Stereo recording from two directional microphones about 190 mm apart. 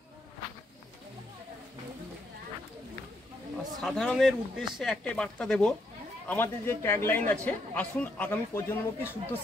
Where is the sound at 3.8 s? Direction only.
Centre (ahead or behind).